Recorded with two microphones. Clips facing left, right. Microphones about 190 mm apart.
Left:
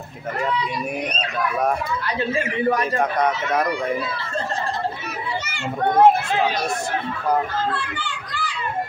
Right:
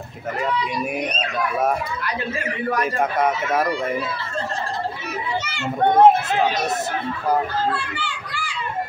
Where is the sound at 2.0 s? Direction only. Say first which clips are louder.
Left 3 dB; 30° left (ahead or behind).